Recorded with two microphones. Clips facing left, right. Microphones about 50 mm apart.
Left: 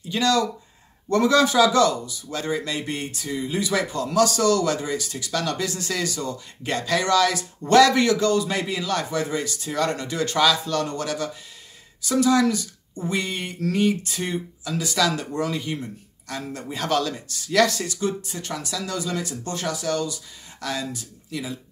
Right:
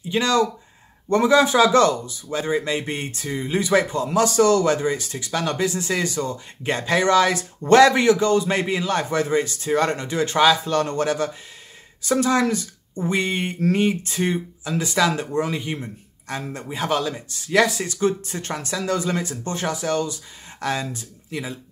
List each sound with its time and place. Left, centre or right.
0.1 s speech: right
1.6 s speech: right
2.2 s speech: right
3.9 s speech: right
16.6 s speech: centre
17.8 s speech: right